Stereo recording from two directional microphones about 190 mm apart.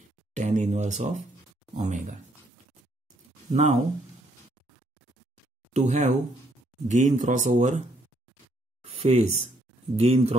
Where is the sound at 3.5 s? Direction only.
40° right (ahead or behind).